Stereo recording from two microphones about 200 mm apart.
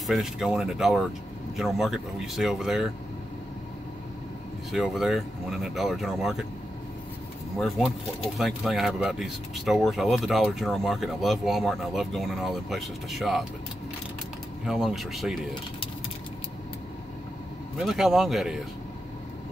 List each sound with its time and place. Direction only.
0.0 s speech: centre (ahead or behind)
4.7 s speech: centre (ahead or behind)
7.5 s speech: centre (ahead or behind)
14.7 s speech: centre (ahead or behind)
17.7 s speech: centre (ahead or behind)